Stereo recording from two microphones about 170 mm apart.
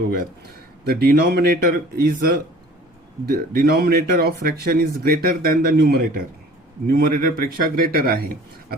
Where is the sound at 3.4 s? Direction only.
60° right (ahead or behind).